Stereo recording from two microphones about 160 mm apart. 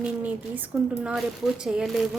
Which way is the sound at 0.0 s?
10° right (ahead or behind).